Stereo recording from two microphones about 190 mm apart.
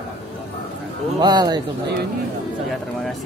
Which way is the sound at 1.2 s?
20° right (ahead or behind).